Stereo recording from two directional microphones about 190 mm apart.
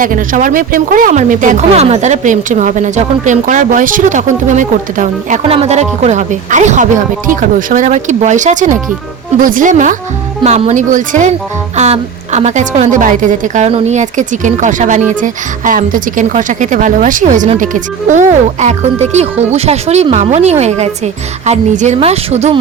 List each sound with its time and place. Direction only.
0.0 s a woman's voice: 45° right (ahead or behind)